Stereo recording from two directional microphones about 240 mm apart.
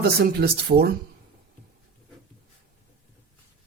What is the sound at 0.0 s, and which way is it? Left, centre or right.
Speech, right.